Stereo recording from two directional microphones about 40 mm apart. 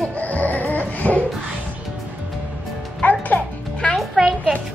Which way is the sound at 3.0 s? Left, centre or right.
Left.